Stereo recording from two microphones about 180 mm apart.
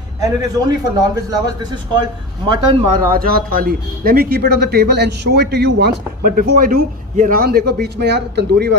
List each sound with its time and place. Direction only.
0.2 s a man's voice: 20° right (ahead or behind)
3.2 s speech: 50° right (ahead or behind); by 8.6 s 65° right (ahead or behind)